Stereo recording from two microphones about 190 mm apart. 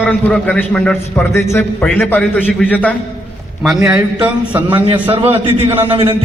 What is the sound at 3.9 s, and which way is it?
Mantra, 10° right (ahead or behind).